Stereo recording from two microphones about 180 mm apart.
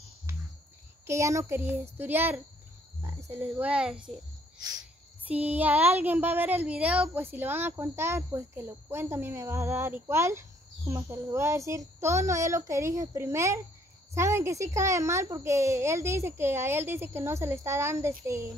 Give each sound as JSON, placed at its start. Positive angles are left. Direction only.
{"t": 0.3, "sound": "a sound", "side_deg": -15}
{"t": 1.0, "sound": "speech", "side_deg": -15}
{"t": 4.6, "sound": "cricket", "side_deg": -20}
{"t": 5.3, "sound": "speech", "side_deg": -10}